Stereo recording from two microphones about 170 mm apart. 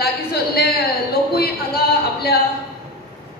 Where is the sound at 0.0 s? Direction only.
65° left (ahead or behind).